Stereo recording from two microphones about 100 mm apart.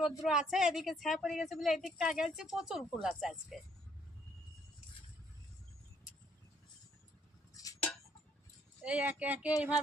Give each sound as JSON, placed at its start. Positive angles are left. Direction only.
{"t": 0.2, "sound": "a woman's voice", "side_deg": -5}
{"t": 7.5, "sound": "a sound", "side_deg": 35}
{"t": 8.8, "sound": "speech", "side_deg": -10}